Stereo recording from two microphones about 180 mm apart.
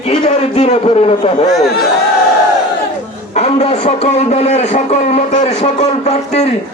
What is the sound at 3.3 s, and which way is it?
A man's voice, 35° left (ahead or behind).